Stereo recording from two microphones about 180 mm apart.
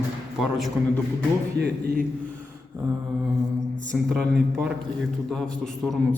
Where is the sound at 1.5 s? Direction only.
65° right (ahead or behind).